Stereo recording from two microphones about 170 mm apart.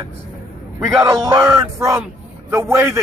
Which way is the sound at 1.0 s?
15° right (ahead or behind).